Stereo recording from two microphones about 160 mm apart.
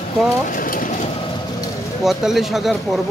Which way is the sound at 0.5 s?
60° left (ahead or behind).